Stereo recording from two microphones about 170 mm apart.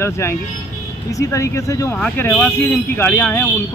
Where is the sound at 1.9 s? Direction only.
5° left (ahead or behind).